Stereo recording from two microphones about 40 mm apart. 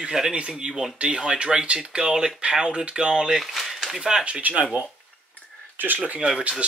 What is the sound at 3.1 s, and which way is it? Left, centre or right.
Speech, centre.